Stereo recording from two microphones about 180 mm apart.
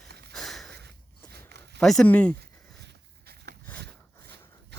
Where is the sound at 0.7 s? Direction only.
65° right (ahead or behind).